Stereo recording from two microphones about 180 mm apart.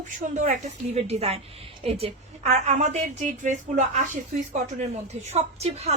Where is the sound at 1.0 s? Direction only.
35° right (ahead or behind).